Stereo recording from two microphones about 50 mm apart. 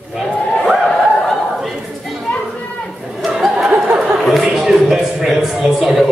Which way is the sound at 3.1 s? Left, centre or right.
Centre.